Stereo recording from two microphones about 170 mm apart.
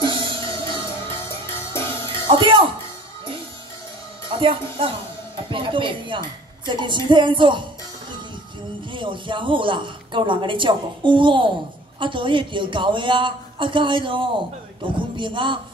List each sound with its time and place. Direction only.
0.0 s music: 30° right (ahead or behind)
1.0 s music: 15° left (ahead or behind)
2.2 s a woman's voice: 30° right (ahead or behind)
4.3 s a woman's voice: 30° right (ahead or behind)
8.9 s a woman's voice: 30° right (ahead or behind)